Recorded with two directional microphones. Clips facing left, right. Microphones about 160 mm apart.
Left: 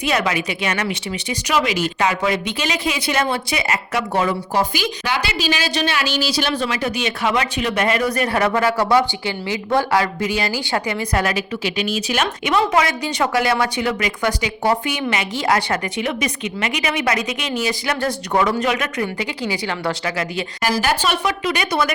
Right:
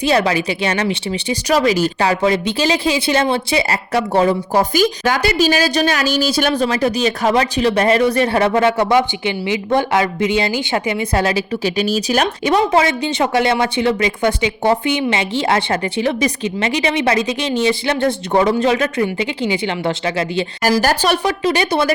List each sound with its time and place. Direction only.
0.0 s speech: 30° right (ahead or behind)
20.8 s speech: 40° right (ahead or behind)